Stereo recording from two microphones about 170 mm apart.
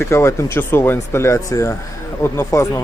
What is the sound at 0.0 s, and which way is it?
A man's voice, 15° left (ahead or behind).